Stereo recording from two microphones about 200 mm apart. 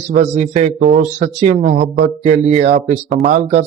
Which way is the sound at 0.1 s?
35° right (ahead or behind).